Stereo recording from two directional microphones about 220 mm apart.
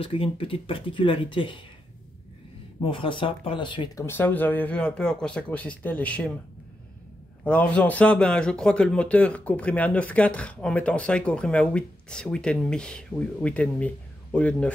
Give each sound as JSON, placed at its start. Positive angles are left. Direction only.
{"t": 0.0, "sound": "speech", "side_deg": 25}
{"t": 2.8, "sound": "speech", "side_deg": 25}
{"t": 7.4, "sound": "speech", "side_deg": 5}